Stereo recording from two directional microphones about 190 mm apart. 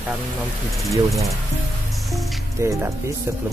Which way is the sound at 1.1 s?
Centre (ahead or behind).